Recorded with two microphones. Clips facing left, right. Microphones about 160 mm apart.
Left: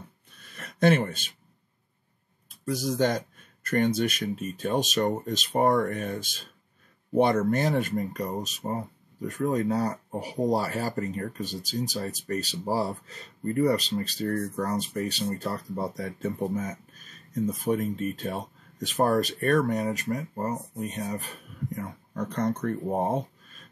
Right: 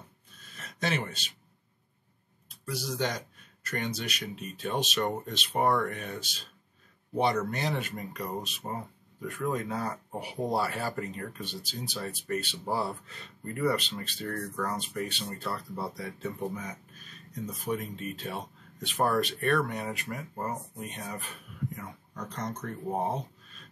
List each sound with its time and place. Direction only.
0.6 s speech: 55° left (ahead or behind)
2.6 s speech: 45° left (ahead or behind)